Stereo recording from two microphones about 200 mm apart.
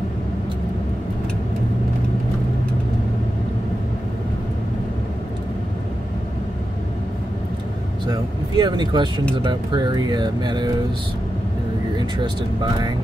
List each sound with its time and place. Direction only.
8.1 s speech: 20° right (ahead or behind)